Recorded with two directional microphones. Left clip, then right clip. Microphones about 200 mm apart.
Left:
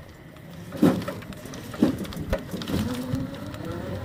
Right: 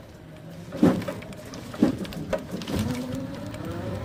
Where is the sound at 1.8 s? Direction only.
40° left (ahead or behind).